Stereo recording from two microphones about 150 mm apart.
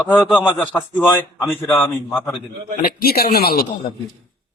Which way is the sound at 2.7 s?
85° left.